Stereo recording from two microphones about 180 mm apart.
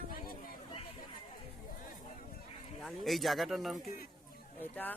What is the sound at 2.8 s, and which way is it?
Speech, centre (ahead or behind).